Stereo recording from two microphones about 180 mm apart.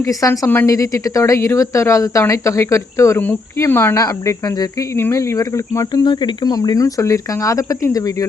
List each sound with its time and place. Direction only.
0.0 s a woman's voice: 20° left (ahead or behind)